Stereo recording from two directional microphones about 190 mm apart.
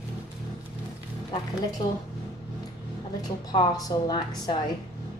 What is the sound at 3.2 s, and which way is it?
A woman's voice, 20° left (ahead or behind).